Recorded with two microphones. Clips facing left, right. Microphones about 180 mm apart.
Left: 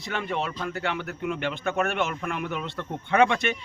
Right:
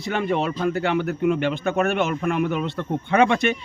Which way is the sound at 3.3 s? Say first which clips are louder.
Right 6 dB; 35° right (ahead or behind).